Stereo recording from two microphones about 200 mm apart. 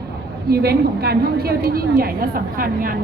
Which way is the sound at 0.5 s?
50° right (ahead or behind).